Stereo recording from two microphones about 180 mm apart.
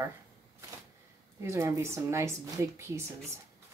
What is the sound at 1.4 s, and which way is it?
A woman's voice, 15° right (ahead or behind).